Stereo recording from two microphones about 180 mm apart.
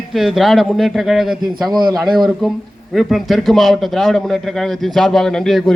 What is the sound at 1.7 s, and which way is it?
Speech, 25° right (ahead or behind).